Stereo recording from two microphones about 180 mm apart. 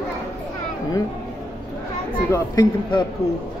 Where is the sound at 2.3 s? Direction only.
20° left (ahead or behind).